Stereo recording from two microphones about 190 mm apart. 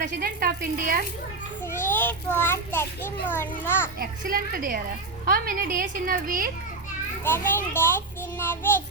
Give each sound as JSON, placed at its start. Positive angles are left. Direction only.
{"t": 0.2, "sound": "a woman's voice", "side_deg": -50}
{"t": 1.6, "sound": "a child's voice", "side_deg": 10}
{"t": 4.0, "sound": "a woman's voice", "side_deg": -50}
{"t": 7.3, "sound": "a child's voice", "side_deg": 10}